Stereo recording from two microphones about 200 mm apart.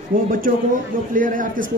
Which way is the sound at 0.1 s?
45° right (ahead or behind).